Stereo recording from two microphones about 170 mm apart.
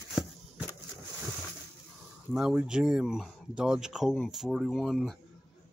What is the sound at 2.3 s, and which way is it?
Speech, 5° right (ahead or behind).